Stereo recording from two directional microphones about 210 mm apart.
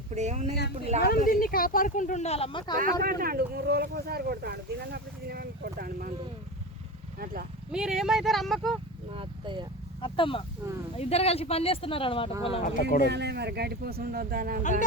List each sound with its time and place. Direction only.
0.1 s speech: 35° right (ahead or behind)
0.5 s speech: 50° left (ahead or behind); by 2.7 s 25° left (ahead or behind)
2.7 s speech: 45° right (ahead or behind)
7.7 s speech: 5° right (ahead or behind)
9.1 s speech: 20° right (ahead or behind)
10.0 s speech: 25° left (ahead or behind)
13.1 s speech: 55° right (ahead or behind)
14.6 s speech: 35° left (ahead or behind)